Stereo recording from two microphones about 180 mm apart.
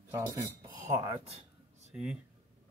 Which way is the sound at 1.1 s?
35° right (ahead or behind).